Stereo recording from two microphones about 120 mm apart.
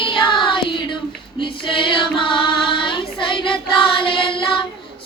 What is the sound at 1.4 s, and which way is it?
Child singing, 45° left (ahead or behind).